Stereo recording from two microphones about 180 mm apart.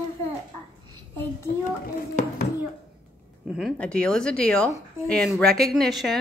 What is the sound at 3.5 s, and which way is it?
A woman's voice, 5° right (ahead or behind).